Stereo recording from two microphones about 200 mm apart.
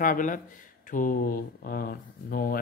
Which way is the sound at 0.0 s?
40° left (ahead or behind).